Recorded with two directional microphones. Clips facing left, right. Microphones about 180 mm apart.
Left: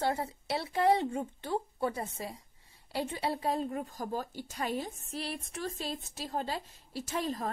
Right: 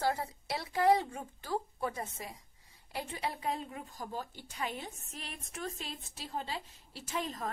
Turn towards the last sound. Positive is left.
turn(degrees=40)  # may be behind; listen again after turning